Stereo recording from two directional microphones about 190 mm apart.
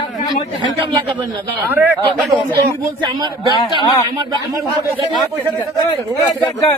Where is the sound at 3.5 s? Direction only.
25° left (ahead or behind).